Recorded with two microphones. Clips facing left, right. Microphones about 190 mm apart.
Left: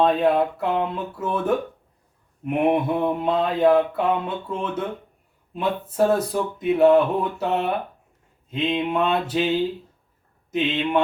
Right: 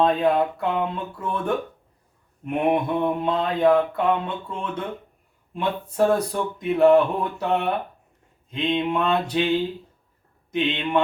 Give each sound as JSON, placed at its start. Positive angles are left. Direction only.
{"t": 0.0, "sound": "speech", "side_deg": 5}
{"t": 2.7, "sound": "speech", "side_deg": 5}